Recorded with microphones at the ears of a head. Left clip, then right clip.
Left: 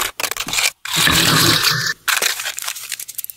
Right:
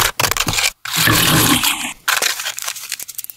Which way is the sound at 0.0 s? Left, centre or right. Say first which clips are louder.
Right 6 dB; right.